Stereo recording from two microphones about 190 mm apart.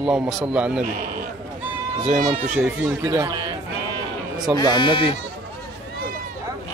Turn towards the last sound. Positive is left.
turn(degrees=25)  # may be behind; listen again after turning